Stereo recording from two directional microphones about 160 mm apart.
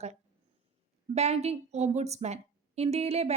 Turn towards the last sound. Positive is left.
turn(degrees=-40)  # may be behind; listen again after turning